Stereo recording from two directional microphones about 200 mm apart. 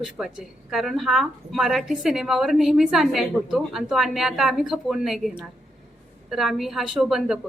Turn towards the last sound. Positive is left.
turn(degrees=0)  # may be behind; listen again after turning